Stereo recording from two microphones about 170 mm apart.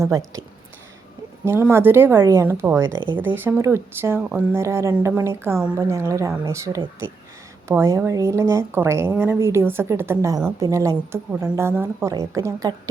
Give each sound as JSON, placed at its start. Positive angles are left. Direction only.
{"t": 0.0, "sound": "speech", "side_deg": -20}
{"t": 1.5, "sound": "a woman's voice", "side_deg": -15}